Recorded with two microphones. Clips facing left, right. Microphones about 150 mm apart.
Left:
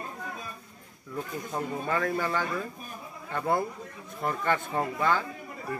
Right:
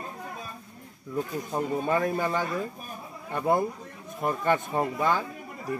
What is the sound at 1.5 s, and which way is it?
A man's voice, 20° right (ahead or behind).